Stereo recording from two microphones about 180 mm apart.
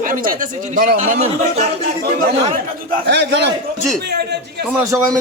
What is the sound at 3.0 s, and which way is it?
Speech, 70° right (ahead or behind).